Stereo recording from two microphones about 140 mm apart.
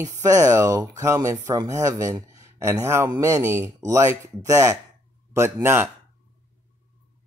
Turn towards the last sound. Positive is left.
turn(degrees=-20)  # may be behind; listen again after turning